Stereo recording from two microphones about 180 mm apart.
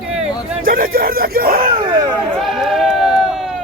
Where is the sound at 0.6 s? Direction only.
50° right (ahead or behind).